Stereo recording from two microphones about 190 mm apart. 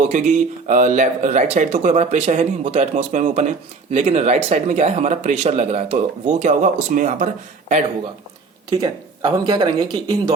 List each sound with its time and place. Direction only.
0.0 s speech: 40° right (ahead or behind)
8.7 s speech: 20° right (ahead or behind)